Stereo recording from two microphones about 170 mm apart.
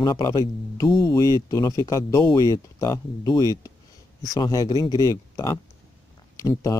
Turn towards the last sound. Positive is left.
turn(degrees=20)  # may be behind; listen again after turning